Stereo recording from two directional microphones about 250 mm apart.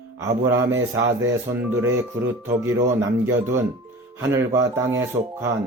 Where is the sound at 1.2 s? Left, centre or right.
Centre.